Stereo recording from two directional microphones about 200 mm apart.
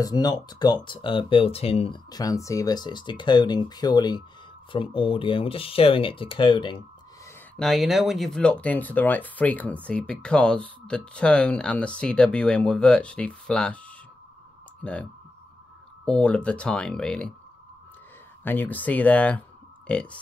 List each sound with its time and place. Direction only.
0.0 s speech: 20° left (ahead or behind)
7.5 s speech: centre (ahead or behind)
16.1 s speech: 5° left (ahead or behind)
18.4 s speech: 10° left (ahead or behind)